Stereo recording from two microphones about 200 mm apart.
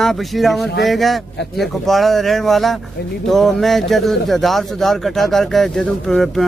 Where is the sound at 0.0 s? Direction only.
Centre (ahead or behind).